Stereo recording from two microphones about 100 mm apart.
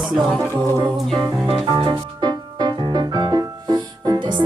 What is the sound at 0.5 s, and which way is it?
Music, 40° right (ahead or behind).